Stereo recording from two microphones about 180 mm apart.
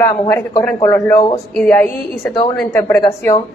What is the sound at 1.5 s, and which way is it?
A woman's voice, 5° left (ahead or behind).